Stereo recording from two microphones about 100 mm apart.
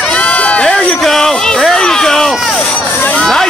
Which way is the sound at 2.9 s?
20° left (ahead or behind).